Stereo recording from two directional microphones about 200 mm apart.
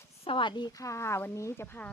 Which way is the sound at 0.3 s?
25° left (ahead or behind).